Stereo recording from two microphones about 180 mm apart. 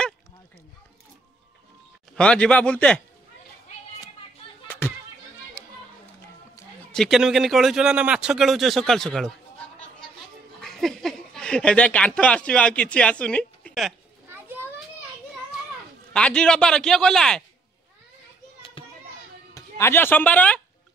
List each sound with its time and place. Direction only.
2.1 s speech: 5° left (ahead or behind)
4.6 s a sound: 10° left (ahead or behind)
6.9 s speech: centre (ahead or behind)
10.6 s speech: centre (ahead or behind)
16.1 s speech: 5° left (ahead or behind)
18.8 s children playing: 30° left (ahead or behind)
19.5 s speech: 15° left (ahead or behind)